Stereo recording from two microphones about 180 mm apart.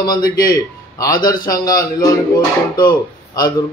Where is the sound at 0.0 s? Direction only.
20° left (ahead or behind).